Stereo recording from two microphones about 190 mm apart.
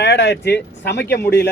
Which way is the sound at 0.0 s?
60° left (ahead or behind).